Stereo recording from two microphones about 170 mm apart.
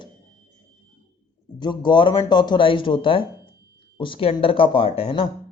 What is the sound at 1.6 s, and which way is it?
A man's voice, 25° left (ahead or behind).